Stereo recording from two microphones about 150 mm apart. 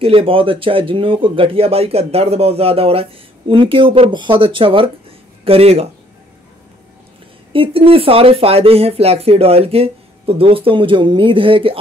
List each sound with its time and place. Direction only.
0.0 s speech: 40° right (ahead or behind)
7.5 s speech: 35° right (ahead or behind)